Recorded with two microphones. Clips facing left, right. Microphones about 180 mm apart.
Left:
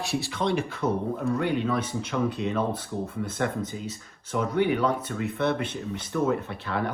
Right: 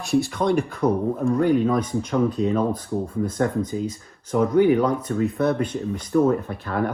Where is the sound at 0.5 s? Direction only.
40° right (ahead or behind).